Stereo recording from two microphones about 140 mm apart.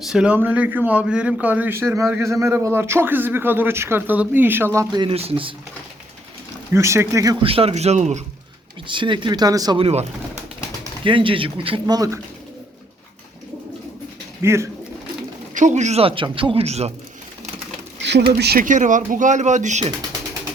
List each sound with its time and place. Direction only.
0.0 s a man's voice: 5° right (ahead or behind); by 5.1 s 30° right (ahead or behind)
5.1 s speech: 45° right (ahead or behind)
6.7 s speech: 20° right (ahead or behind)
7.4 s a man's voice: 45° right (ahead or behind)
8.9 s speech: 35° right (ahead or behind)
9.7 s a man's voice: 45° right (ahead or behind)
11.9 s speech: 25° right (ahead or behind)
14.4 s speech: 20° right (ahead or behind)
15.5 s a man's voice: 60° right (ahead or behind)
18.5 s speech: 65° right (ahead or behind)